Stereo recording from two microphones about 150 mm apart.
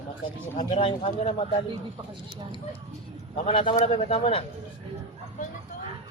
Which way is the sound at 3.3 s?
35° left (ahead or behind).